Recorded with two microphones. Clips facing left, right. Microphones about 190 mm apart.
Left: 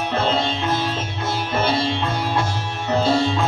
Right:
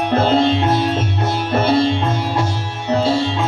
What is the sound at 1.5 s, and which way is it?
Sitar, 55° right (ahead or behind).